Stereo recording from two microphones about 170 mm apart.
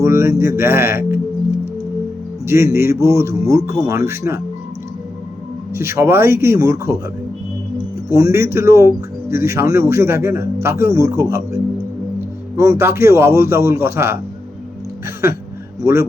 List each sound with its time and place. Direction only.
0.0 s a man's voice: 15° right (ahead or behind)
2.5 s a man's voice: 15° right (ahead or behind)
5.7 s a man's voice: 15° right (ahead or behind)
8.1 s a man's voice: 15° right (ahead or behind)
15.8 s a man's voice: 15° right (ahead or behind)